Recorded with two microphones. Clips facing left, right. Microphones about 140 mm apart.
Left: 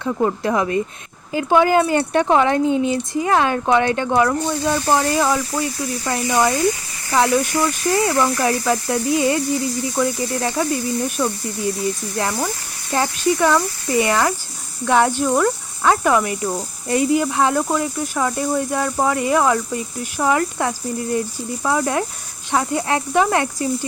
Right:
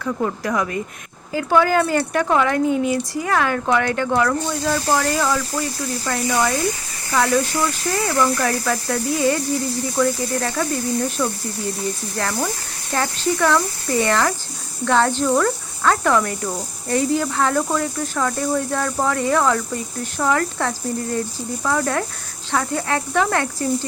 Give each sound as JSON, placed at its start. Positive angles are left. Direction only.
{"t": 0.0, "sound": "speech", "side_deg": 25}
{"t": 6.1, "sound": "speech", "side_deg": 15}